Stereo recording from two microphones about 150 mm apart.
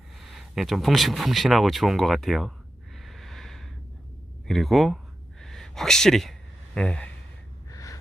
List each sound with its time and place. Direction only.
0.3 s speech: centre (ahead or behind)
2.9 s snort: centre (ahead or behind)
4.4 s speech: centre (ahead or behind)
5.4 s a sound: 5° left (ahead or behind)
6.7 s speech: 5° left (ahead or behind)
7.7 s gasp: 20° left (ahead or behind)